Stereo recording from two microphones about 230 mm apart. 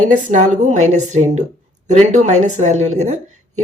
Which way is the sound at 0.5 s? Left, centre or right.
Right.